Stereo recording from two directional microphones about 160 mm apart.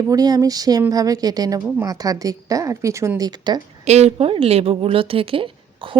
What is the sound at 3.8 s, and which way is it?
A woman's voice, 45° right (ahead or behind).